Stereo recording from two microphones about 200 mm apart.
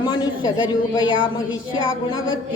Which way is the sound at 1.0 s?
75° left (ahead or behind).